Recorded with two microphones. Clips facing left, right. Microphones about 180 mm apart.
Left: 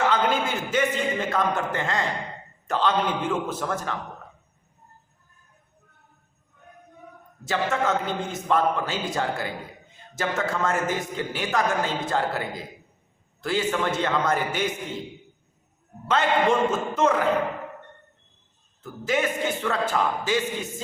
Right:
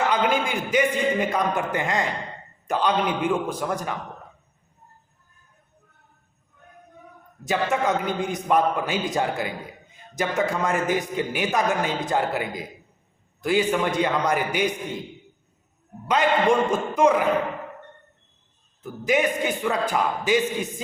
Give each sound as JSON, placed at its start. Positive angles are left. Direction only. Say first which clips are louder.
{"t": 0.1, "sound": "a man's voice", "louder": "right 1 dB", "side_deg": -15}
{"t": 7.4, "sound": "a man's voice", "louder": "right 2 dB", "side_deg": -15}
{"t": 16.0, "sound": "a man's voice", "louder": "right 2 dB", "side_deg": -15}
{"t": 18.8, "sound": "a man's voice", "louder": "right 3 dB", "side_deg": -15}